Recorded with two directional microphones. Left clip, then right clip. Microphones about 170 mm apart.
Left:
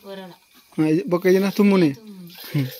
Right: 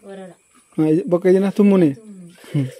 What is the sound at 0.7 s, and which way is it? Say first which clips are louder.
Speech: right 3 dB; 20° right (ahead or behind).